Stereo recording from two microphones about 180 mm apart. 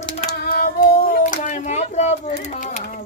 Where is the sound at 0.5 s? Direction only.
50° left (ahead or behind).